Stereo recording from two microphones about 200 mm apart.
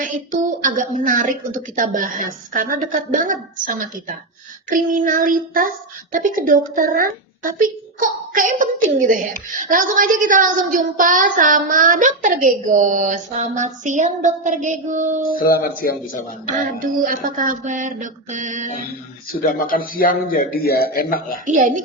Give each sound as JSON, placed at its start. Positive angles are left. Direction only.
{"t": 0.0, "sound": "a child's voice", "side_deg": -40}
{"t": 15.4, "sound": "a man's voice", "side_deg": 45}
{"t": 17.0, "sound": "a child's voice", "side_deg": -40}
{"t": 19.4, "sound": "a man's voice", "side_deg": 45}
{"t": 21.4, "sound": "a child's voice", "side_deg": -40}